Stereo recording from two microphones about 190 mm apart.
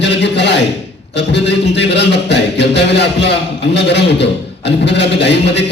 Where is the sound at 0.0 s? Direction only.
65° left (ahead or behind).